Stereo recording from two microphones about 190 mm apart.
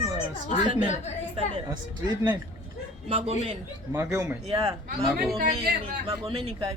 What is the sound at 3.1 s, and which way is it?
Speech, 30° right (ahead or behind).